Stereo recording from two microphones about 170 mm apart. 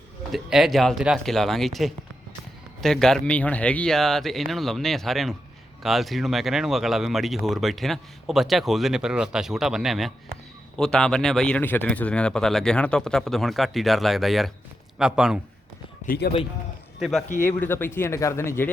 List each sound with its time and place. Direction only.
0.3 s speech: centre (ahead or behind)
16.0 s speech: 70° left (ahead or behind)
17.0 s speech: centre (ahead or behind)
17.4 s speech: 10° left (ahead or behind)